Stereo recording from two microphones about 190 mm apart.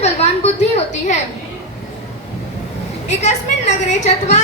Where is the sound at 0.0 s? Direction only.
35° left (ahead or behind).